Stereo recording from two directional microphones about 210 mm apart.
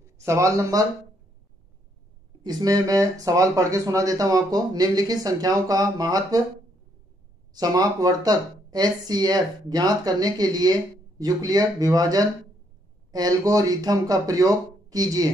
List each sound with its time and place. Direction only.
0.2 s speech: 15° right (ahead or behind)
2.4 s speech: 15° right (ahead or behind)
7.5 s speech: 20° right (ahead or behind)